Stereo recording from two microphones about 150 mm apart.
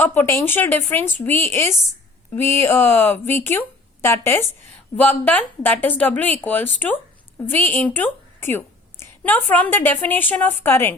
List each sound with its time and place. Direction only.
0.0 s a woman's voice: 15° left (ahead or behind)